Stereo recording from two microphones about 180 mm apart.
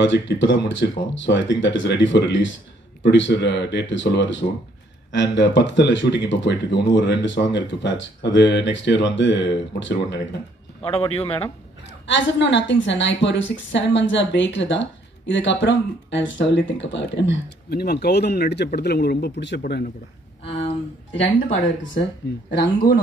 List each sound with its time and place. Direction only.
0.0 s a woman's voice: 90° left
10.8 s a man's voice: 35° left (ahead or behind)
11.8 s a woman's voice: 85° left; by 19.9 s 60° left (ahead or behind)
20.4 s a sound: 35° left (ahead or behind)
22.9 s speech: 60° left (ahead or behind)